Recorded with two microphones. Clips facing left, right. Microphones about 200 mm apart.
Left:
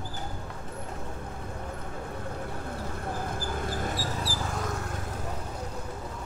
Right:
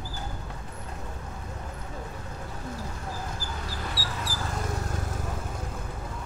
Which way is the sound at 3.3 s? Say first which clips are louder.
Left 5 dB; 55° left (ahead or behind).